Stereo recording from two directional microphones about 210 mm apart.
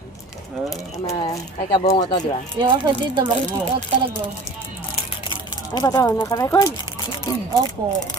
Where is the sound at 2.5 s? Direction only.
20° right (ahead or behind).